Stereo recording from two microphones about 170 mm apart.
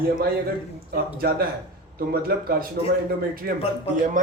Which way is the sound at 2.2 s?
65° right (ahead or behind).